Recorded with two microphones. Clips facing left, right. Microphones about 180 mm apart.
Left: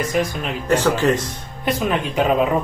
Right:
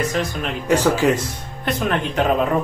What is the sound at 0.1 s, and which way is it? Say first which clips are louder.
Speech: left 2 dB; 10° left (ahead or behind).